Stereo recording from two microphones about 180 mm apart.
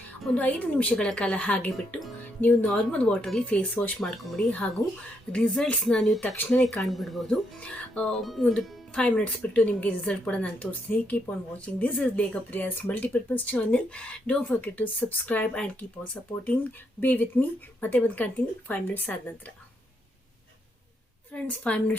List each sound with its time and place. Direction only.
0.2 s speech: 5° left (ahead or behind)
17.0 s speech: 10° left (ahead or behind)
21.4 s speech: 5° left (ahead or behind)